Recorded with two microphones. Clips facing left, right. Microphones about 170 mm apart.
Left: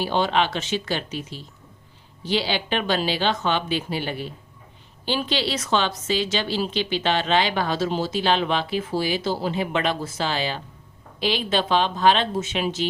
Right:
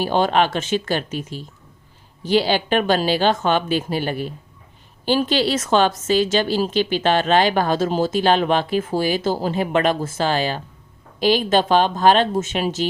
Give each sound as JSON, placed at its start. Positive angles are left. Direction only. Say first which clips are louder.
{"t": 0.0, "sound": "a woman's voice", "louder": "right 4 dB", "side_deg": -45}